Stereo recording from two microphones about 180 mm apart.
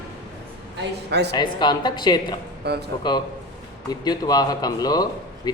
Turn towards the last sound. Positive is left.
turn(degrees=20)  # may be behind; listen again after turning